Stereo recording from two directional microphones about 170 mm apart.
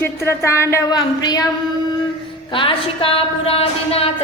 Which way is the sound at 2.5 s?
30° left (ahead or behind).